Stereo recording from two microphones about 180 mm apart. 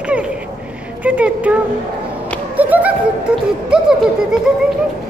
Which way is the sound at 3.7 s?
5° right (ahead or behind).